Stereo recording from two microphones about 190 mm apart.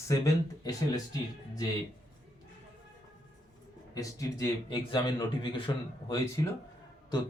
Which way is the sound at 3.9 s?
20° left (ahead or behind).